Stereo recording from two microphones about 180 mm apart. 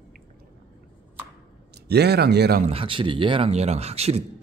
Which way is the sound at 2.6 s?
30° right (ahead or behind).